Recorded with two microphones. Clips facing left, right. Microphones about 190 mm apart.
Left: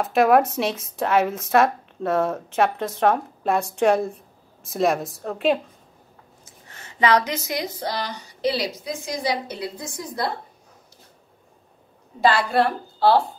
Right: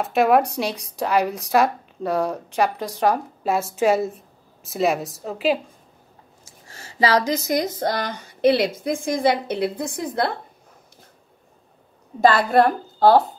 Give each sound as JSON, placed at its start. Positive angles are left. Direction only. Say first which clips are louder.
{"t": 0.0, "sound": "speech", "louder": "even", "side_deg": 0}
{"t": 6.7, "sound": "a woman's voice", "louder": "even", "side_deg": -35}
{"t": 12.2, "sound": "a woman's voice", "louder": "right 3 dB", "side_deg": -45}